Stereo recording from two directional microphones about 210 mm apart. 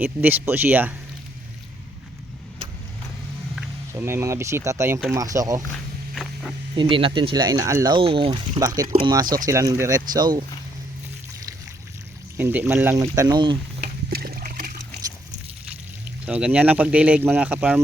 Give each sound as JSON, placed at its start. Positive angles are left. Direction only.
{"t": 0.0, "sound": "speech", "side_deg": -10}
{"t": 3.9, "sound": "speech", "side_deg": -15}
{"t": 6.7, "sound": "speech", "side_deg": -25}
{"t": 9.2, "sound": "speech", "side_deg": -40}
{"t": 9.5, "sound": "speech", "side_deg": -15}
{"t": 12.4, "sound": "speech", "side_deg": -10}
{"t": 13.8, "sound": "splash", "side_deg": -45}
{"t": 16.2, "sound": "speech", "side_deg": -5}